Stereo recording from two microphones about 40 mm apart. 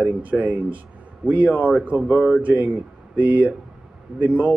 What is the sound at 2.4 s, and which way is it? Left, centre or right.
Speech, right.